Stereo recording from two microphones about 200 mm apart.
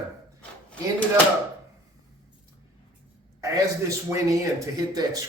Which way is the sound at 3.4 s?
15° right (ahead or behind).